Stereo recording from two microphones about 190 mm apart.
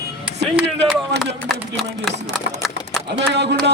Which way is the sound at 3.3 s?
65° right (ahead or behind).